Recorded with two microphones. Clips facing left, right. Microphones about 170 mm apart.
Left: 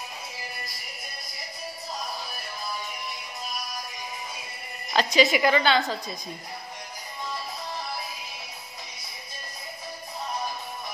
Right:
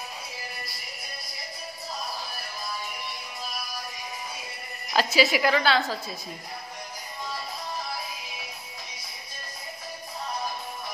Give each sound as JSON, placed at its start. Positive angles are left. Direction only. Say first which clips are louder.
{"t": 4.9, "sound": "a woman's voice", "louder": "left 1 dB", "side_deg": -5}